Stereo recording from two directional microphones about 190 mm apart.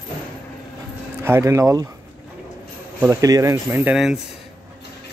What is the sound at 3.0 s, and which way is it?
Speech, 15° right (ahead or behind).